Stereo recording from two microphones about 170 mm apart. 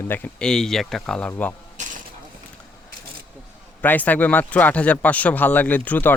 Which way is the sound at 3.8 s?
10° left (ahead or behind).